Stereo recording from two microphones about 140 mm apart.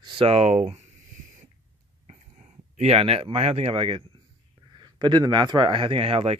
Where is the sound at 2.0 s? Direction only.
50° right (ahead or behind).